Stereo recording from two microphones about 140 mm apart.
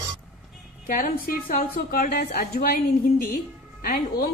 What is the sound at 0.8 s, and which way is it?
A woman's voice, 75° left (ahead or behind).